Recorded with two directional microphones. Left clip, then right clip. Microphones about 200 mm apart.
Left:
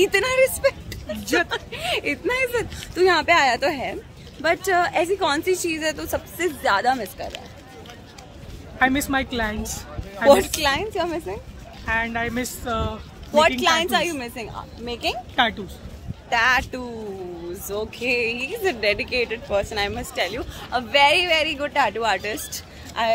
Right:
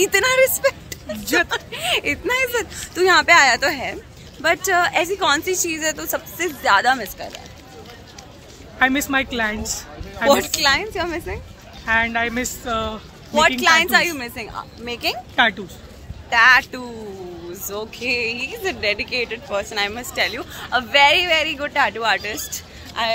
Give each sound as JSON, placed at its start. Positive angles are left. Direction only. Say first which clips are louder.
{"t": 0.0, "sound": "speech", "louder": "right 2 dB", "side_deg": 5}
{"t": 1.2, "sound": "speech", "louder": "right 3 dB", "side_deg": -15}
{"t": 1.5, "sound": "speech", "louder": "right 4 dB", "side_deg": 10}
{"t": 8.7, "sound": "a woman's voice", "louder": "right 2 dB", "side_deg": 0}
{"t": 10.3, "sound": "speech", "louder": "right 2 dB", "side_deg": 30}
{"t": 11.8, "sound": "speech", "louder": "right 5 dB", "side_deg": -20}
{"t": 12.6, "sound": "a woman's voice", "louder": "right 2 dB", "side_deg": 0}
{"t": 13.3, "sound": "speech", "louder": "right 1 dB", "side_deg": 30}
{"t": 13.6, "sound": "speech", "louder": "right 5 dB", "side_deg": 20}
{"t": 15.3, "sound": "speech", "louder": "right 4 dB", "side_deg": -5}
{"t": 16.3, "sound": "speech", "louder": "right 6 dB", "side_deg": 20}
{"t": 22.5, "sound": "a sound", "louder": "right 2 dB", "side_deg": 40}